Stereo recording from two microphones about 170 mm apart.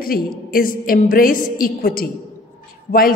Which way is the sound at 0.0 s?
60° left (ahead or behind).